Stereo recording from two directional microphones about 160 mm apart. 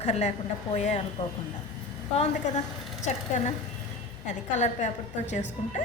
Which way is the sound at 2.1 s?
40° left (ahead or behind).